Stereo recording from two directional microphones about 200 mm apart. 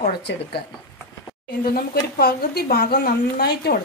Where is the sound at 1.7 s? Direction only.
50° left (ahead or behind).